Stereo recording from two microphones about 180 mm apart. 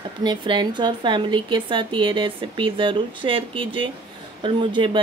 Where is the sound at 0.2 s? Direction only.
25° right (ahead or behind).